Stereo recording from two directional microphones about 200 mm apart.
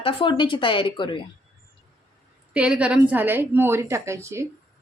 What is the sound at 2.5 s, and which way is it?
A woman's voice, 5° right (ahead or behind).